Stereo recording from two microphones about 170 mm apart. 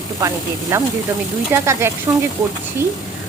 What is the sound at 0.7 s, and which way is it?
Speech, 15° right (ahead or behind).